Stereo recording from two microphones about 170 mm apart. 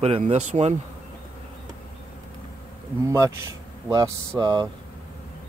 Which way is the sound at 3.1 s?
20° right (ahead or behind).